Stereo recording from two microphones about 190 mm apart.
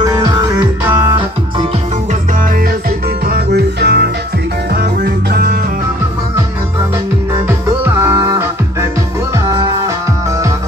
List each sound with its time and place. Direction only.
0.0 s music: 20° right (ahead or behind)
3.3 s music: 60° right (ahead or behind)
7.4 s music: 15° right (ahead or behind)